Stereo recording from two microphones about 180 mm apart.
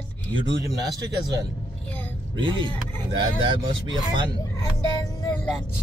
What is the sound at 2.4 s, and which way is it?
Speech, 25° right (ahead or behind).